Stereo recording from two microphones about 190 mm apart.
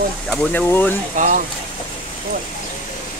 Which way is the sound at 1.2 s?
40° right (ahead or behind).